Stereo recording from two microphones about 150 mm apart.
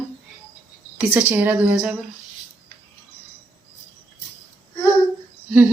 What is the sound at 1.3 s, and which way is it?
Speech, 10° right (ahead or behind).